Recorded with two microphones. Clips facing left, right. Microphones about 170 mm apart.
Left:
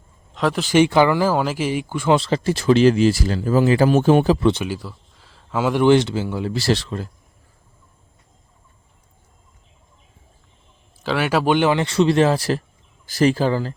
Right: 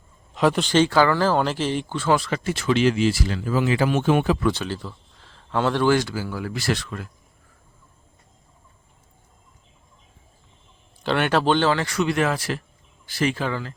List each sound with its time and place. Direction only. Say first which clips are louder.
0.3 s speech: right 1 dB; centre (ahead or behind)
0.7 s speech: left 6 dB; 15° left (ahead or behind)
2.1 s speech: left 5 dB; 30° left (ahead or behind)
4.6 s a sound: left 3 dB; 10° left (ahead or behind)
5.8 s speech: left 5 dB; 20° left (ahead or behind)
11.0 s speech: left 1 dB; 5° left (ahead or behind); by 13.7 s 35° left (ahead or behind)